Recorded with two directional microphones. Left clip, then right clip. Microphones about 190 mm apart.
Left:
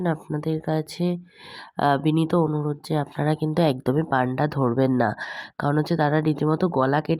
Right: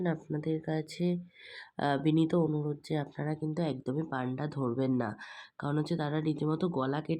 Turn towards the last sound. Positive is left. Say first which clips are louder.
# left 11 dB
turn(degrees=35)  # may be behind; listen again after turning